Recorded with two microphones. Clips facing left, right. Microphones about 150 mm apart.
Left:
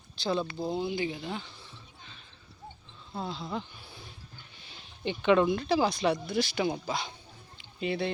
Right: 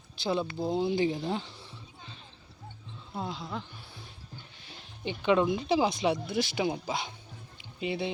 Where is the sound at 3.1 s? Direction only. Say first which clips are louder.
Even; 15° right (ahead or behind).